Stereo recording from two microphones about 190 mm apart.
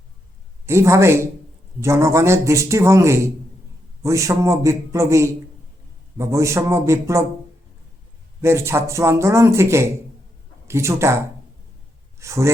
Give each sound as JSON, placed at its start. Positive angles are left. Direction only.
{"t": 0.6, "sound": "speech", "side_deg": -15}
{"t": 8.4, "sound": "speech", "side_deg": -15}
{"t": 12.2, "sound": "speech", "side_deg": -15}